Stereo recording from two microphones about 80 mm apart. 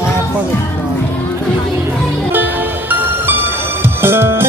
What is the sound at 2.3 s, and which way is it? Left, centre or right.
Music, right.